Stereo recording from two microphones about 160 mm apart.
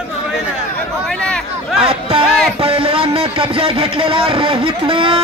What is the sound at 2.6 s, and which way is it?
A man's voice, 35° right (ahead or behind).